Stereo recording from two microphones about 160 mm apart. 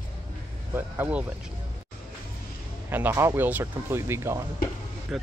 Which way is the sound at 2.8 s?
10° right (ahead or behind).